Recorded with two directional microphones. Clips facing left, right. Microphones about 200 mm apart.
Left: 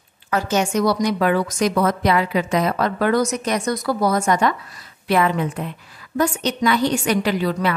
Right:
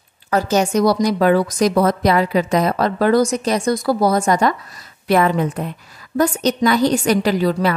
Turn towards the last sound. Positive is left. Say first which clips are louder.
# right 4 dB
turn(degrees=-40)  # may be behind; listen again after turning